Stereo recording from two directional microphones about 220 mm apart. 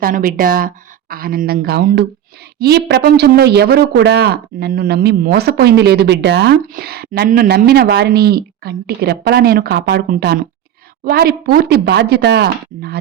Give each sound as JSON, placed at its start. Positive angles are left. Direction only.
{"t": 0.0, "sound": "speech", "side_deg": -40}